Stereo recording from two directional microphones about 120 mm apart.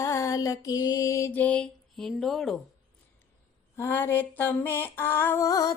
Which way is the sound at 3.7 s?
20° left (ahead or behind).